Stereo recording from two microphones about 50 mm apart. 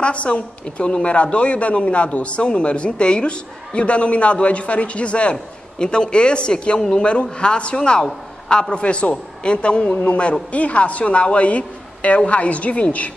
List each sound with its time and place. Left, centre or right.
0.0 s a woman's voice: left